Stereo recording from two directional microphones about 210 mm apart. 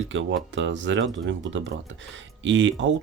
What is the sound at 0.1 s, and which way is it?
Speech, 65° right (ahead or behind).